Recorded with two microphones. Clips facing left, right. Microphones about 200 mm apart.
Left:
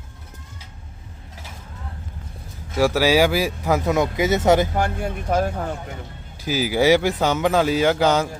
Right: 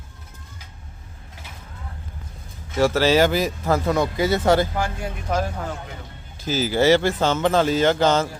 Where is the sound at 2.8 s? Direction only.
10° left (ahead or behind).